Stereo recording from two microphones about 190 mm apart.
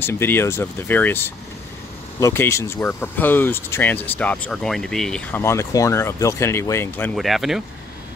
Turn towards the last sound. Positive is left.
turn(degrees=0)  # may be behind; listen again after turning